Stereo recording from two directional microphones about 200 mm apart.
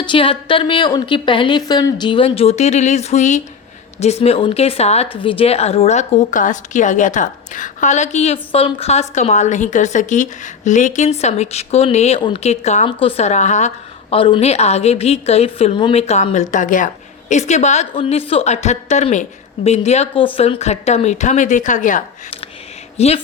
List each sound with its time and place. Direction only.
0.0 s a woman's voice: 25° left (ahead or behind)